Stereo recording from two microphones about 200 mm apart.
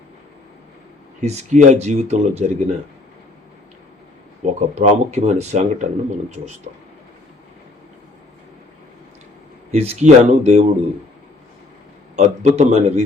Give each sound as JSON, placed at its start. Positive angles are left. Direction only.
{"t": 1.2, "sound": "speech", "side_deg": -35}
{"t": 4.4, "sound": "speech", "side_deg": -35}
{"t": 9.7, "sound": "speech", "side_deg": -30}
{"t": 12.1, "sound": "a man's voice", "side_deg": -35}